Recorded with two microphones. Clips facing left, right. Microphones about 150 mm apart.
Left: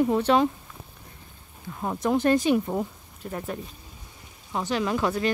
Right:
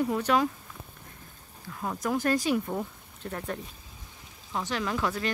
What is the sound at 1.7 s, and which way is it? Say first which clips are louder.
Speech: left 5 dB; 25° left (ahead or behind).